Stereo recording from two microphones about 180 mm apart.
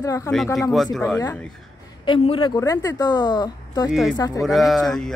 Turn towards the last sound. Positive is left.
turn(degrees=5)  # may be behind; listen again after turning